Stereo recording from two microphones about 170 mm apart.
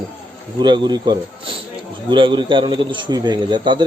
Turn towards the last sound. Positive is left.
turn(degrees=-25)  # may be behind; listen again after turning